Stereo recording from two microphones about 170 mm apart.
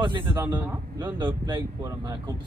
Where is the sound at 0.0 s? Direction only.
30° right (ahead or behind).